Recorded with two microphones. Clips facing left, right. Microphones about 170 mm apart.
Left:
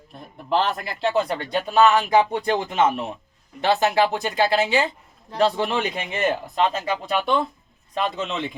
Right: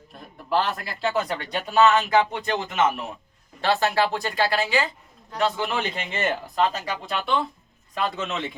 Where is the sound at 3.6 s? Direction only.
20° left (ahead or behind).